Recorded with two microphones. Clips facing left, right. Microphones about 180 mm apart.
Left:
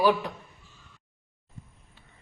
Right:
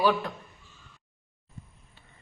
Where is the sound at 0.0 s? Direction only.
10° left (ahead or behind).